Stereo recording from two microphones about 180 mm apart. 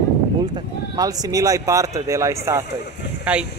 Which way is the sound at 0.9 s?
20° right (ahead or behind).